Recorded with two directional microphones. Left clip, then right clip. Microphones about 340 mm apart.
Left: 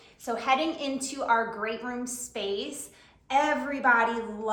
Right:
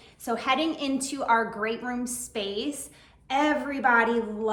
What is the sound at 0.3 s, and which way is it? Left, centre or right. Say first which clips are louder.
A woman's voice: even; right.